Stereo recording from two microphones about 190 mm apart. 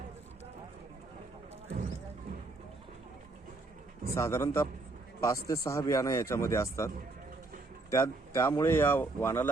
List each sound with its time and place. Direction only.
4.1 s speech: 15° left (ahead or behind)